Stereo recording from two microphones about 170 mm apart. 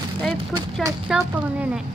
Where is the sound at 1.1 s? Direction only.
10° right (ahead or behind).